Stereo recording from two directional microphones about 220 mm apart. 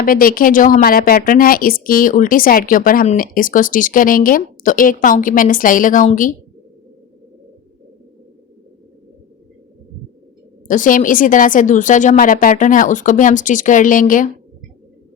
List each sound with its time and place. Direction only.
0.0 s a woman's voice: 40° left (ahead or behind)
10.7 s a woman's voice: 35° left (ahead or behind)